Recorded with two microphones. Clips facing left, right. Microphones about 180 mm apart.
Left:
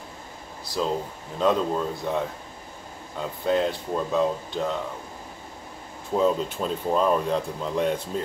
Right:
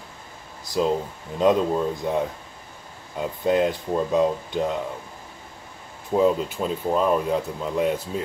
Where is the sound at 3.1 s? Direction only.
15° right (ahead or behind).